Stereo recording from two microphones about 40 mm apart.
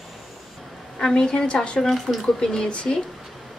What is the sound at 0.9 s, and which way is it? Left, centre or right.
A woman's voice, centre.